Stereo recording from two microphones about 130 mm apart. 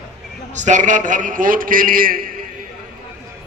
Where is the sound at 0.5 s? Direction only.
70° right (ahead or behind); by 2.3 s 90° right.